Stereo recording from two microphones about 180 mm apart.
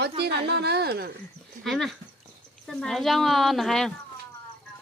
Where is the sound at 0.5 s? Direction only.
65° right (ahead or behind).